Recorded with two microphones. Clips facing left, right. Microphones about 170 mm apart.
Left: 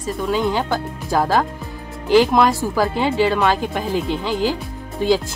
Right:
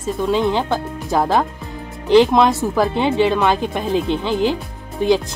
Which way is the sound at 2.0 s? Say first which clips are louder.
Right 2 dB; 20° right (ahead or behind).